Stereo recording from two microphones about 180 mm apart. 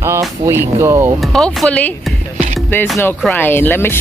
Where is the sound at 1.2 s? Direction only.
5° left (ahead or behind).